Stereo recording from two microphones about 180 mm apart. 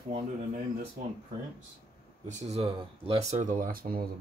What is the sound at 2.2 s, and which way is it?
Speech, 40° right (ahead or behind).